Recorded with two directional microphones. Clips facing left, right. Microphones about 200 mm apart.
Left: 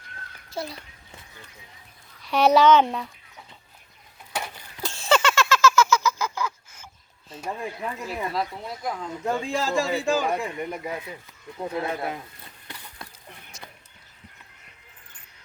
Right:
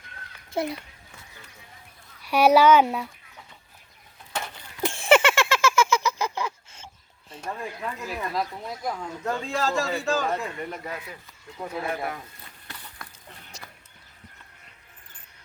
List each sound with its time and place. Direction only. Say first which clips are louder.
2.2 s a child's voice: even; 10° right (ahead or behind)
4.3 s a sound: left 1 dB; 10° left (ahead or behind)
4.8 s a sound: right 4 dB; 25° right (ahead or behind)
7.4 s a man's voice: left 2 dB; 15° left (ahead or behind)
8.3 s speech: even; centre (ahead or behind)
9.2 s a man's voice: left 1 dB; 15° left (ahead or behind)